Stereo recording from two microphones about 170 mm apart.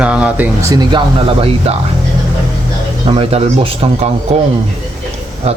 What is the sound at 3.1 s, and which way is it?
Speech, 35° right (ahead or behind).